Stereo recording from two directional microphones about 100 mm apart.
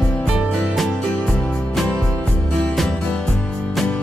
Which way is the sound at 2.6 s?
5° left (ahead or behind).